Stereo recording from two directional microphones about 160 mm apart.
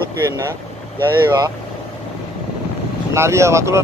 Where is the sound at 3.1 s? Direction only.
15° right (ahead or behind).